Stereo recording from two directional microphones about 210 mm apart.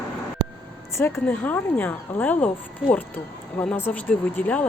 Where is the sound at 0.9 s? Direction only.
10° left (ahead or behind).